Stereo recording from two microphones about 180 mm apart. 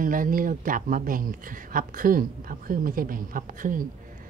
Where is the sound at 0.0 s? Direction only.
50° right (ahead or behind).